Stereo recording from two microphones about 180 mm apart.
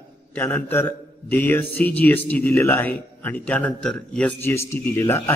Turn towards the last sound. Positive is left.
turn(degrees=15)  # may be behind; listen again after turning